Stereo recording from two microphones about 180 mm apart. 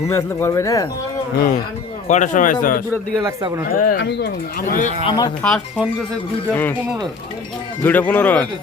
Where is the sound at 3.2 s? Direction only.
20° right (ahead or behind).